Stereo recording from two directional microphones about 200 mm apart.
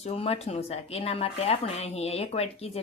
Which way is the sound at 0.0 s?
30° left (ahead or behind).